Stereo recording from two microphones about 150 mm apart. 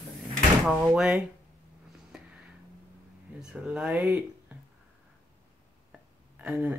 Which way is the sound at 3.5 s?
10° right (ahead or behind).